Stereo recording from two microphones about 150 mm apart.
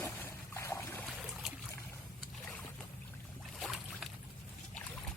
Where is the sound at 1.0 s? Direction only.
Centre (ahead or behind).